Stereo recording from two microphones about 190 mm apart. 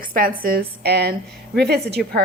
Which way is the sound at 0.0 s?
50° right (ahead or behind).